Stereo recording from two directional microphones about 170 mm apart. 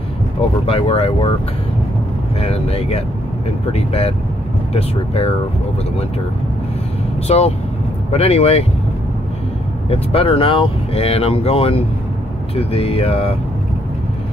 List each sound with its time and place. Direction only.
0.4 s speech: 35° left (ahead or behind)
2.4 s speech: 35° left (ahead or behind)
7.2 s speech: 40° left (ahead or behind)
9.8 s speech: 35° left (ahead or behind)